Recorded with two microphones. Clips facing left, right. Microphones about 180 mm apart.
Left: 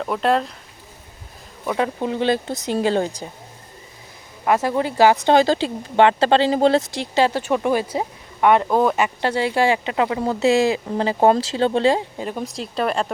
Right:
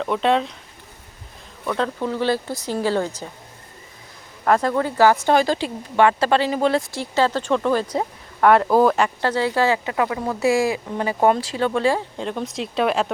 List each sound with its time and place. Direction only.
0.0 s speech: 5° left (ahead or behind)
1.6 s speech: 10° left (ahead or behind)
4.4 s speech: 10° left (ahead or behind)
5.2 s speech: 25° left (ahead or behind)
6.9 s speech: 15° left (ahead or behind); by 9.0 s centre (ahead or behind)
9.0 s speech: 15° left (ahead or behind)
12.1 s speech: 5° left (ahead or behind)